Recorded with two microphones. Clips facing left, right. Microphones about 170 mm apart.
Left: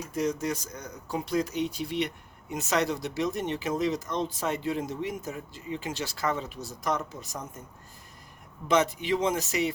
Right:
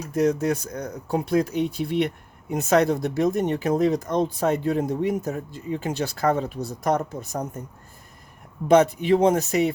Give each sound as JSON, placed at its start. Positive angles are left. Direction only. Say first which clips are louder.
{"t": 0.1, "sound": "speech", "louder": "right 8 dB", "side_deg": -60}
{"t": 8.6, "sound": "speech", "louder": "right 8 dB", "side_deg": -55}